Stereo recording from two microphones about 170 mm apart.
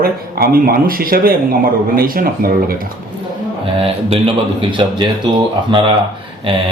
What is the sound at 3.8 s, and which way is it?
Speech, 35° right (ahead or behind).